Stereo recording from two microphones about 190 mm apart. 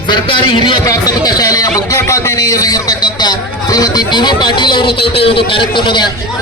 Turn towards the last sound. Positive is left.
turn(degrees=25)  # may be behind; listen again after turning